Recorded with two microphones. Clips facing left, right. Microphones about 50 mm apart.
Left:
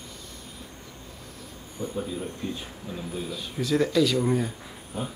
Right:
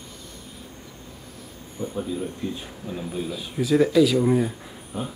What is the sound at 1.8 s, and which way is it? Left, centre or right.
Speech, centre.